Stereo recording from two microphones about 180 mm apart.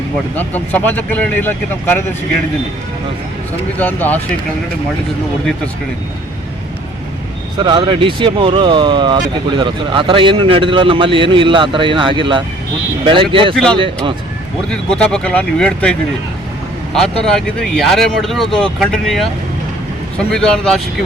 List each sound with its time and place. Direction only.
0.3 s speech: 10° left (ahead or behind)
3.8 s speech: 10° left (ahead or behind)
7.6 s speech: 25° right (ahead or behind)
14.7 s speech: 5° left (ahead or behind)